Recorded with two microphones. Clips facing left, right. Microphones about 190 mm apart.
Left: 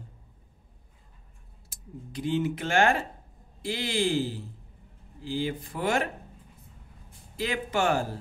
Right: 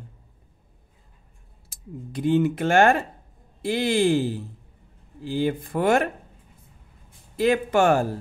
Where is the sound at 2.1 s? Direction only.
55° right (ahead or behind).